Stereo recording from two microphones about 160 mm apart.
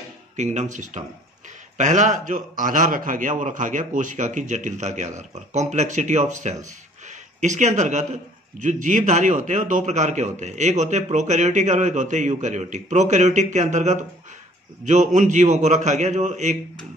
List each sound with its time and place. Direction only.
0.4 s a man's voice: 45° right (ahead or behind)